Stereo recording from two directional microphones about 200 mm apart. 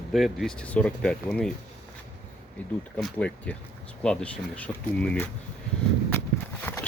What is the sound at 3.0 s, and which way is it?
Speech, 5° left (ahead or behind).